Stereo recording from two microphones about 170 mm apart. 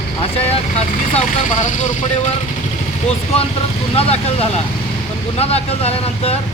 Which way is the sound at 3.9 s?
35° left (ahead or behind).